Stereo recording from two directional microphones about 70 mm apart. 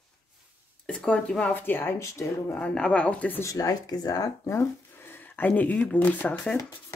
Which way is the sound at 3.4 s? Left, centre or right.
Left.